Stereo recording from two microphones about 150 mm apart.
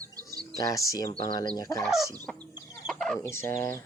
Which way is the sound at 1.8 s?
Centre (ahead or behind).